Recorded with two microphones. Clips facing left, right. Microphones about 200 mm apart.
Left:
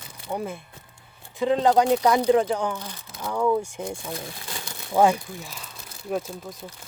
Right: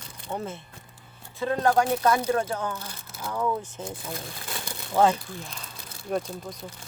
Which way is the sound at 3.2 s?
Centre (ahead or behind).